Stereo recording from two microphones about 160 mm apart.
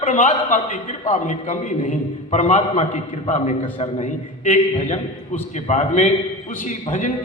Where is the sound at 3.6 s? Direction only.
35° left (ahead or behind).